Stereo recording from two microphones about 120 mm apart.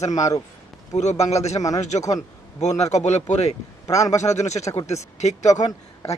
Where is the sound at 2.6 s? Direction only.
70° left (ahead or behind).